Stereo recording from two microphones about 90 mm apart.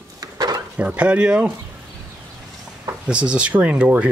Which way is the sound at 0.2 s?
45° right (ahead or behind).